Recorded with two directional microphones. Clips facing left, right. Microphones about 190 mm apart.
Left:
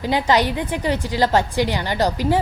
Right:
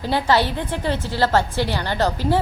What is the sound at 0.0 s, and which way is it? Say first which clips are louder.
A woman's voice: left 1 dB; 15° left (ahead or behind).